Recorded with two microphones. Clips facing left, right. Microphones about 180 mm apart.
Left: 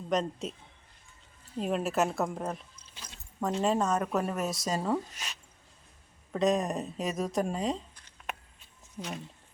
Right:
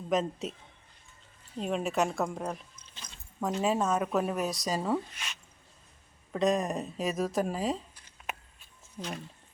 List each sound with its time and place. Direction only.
0.1 s speech: centre (ahead or behind)
1.5 s speech: centre (ahead or behind)
5.1 s speech: 35° left (ahead or behind)
6.3 s speech: centre (ahead or behind)
9.0 s speech: 10° left (ahead or behind)